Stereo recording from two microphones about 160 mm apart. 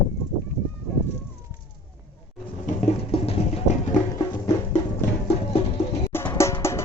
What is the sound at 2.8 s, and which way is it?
Music, 35° left (ahead or behind).